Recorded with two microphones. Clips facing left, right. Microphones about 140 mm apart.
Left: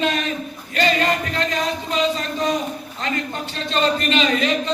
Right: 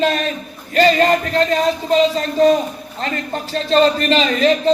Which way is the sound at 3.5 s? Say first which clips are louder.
Right 7 dB; 35° right (ahead or behind).